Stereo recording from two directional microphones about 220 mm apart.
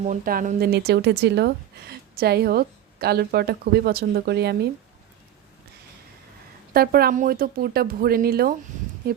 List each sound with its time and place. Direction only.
0.0 s speech: 35° right (ahead or behind)
6.7 s speech: 45° right (ahead or behind)